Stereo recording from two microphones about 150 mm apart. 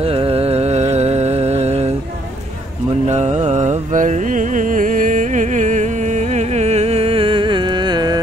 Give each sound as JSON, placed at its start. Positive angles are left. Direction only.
{"t": 0.0, "sound": "music", "side_deg": -40}
{"t": 3.1, "sound": "music", "side_deg": -50}